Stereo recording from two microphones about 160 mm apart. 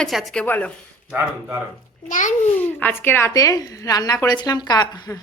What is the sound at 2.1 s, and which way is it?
Speech, 50° left (ahead or behind).